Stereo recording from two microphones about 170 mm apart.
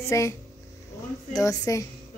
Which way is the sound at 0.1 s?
15° left (ahead or behind).